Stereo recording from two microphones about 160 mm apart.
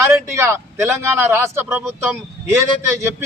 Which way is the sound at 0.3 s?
15° right (ahead or behind).